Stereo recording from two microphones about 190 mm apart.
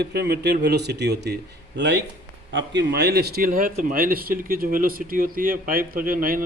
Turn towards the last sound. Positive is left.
turn(degrees=-50)  # may be behind; listen again after turning